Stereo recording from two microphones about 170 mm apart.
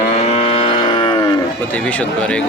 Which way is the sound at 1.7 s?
10° left (ahead or behind).